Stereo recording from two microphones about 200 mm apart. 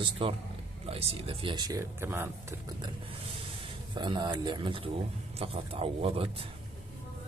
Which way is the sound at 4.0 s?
25° right (ahead or behind).